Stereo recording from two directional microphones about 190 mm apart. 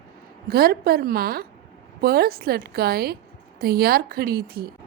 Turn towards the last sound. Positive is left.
turn(degrees=-55)  # may be behind; listen again after turning